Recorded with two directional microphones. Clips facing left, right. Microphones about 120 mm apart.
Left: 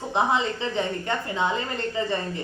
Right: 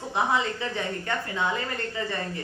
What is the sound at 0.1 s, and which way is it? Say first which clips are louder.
A woman's voice: left 2 dB; 25° left (ahead or behind).